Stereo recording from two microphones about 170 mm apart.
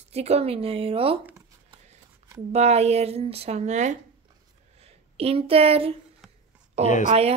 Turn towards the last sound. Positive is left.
turn(degrees=45)  # may be behind; listen again after turning